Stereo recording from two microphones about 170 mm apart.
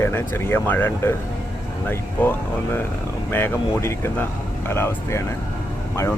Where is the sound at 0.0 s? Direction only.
15° left (ahead or behind).